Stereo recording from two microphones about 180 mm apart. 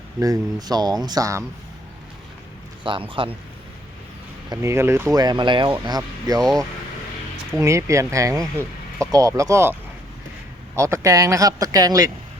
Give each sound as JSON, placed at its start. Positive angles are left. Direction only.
{"t": 0.2, "sound": "speech", "side_deg": -20}
{"t": 2.8, "sound": "speech", "side_deg": -30}
{"t": 4.4, "sound": "speech", "side_deg": -15}
{"t": 7.6, "sound": "speech", "side_deg": -15}
{"t": 10.8, "sound": "speech", "side_deg": -15}